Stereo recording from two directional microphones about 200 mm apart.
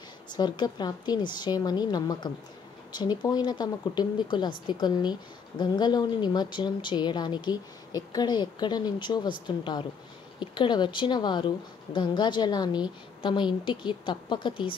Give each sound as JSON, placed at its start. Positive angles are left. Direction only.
{"t": 0.3, "sound": "a woman's voice", "side_deg": 20}